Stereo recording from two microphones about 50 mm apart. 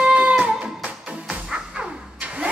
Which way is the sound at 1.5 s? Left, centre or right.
Centre.